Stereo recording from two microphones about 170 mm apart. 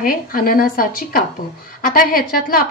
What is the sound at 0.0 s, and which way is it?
A woman's voice, 60° left (ahead or behind).